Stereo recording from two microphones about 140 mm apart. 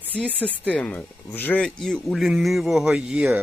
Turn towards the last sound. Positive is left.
turn(degrees=-5)  # may be behind; listen again after turning